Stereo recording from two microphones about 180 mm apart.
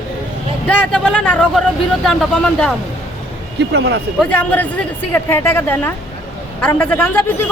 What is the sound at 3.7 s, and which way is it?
Speech, 75° right (ahead or behind).